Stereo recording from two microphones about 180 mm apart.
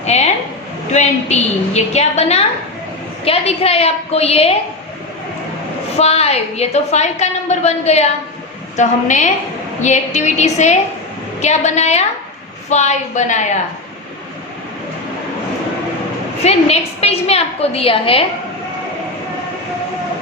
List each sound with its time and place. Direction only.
0.0 s a woman's voice: 40° left (ahead or behind)
6.0 s a woman's voice: 35° left (ahead or behind)
16.4 s a woman's voice: 35° left (ahead or behind)